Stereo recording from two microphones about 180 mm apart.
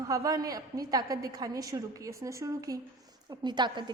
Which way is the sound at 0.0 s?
20° right (ahead or behind).